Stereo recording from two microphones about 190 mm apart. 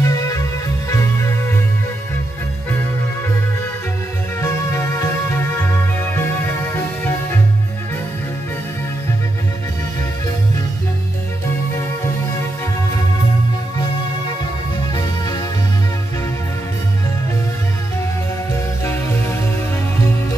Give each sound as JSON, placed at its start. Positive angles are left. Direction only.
{"t": 0.0, "sound": "music", "side_deg": 20}
{"t": 4.4, "sound": "music", "side_deg": 15}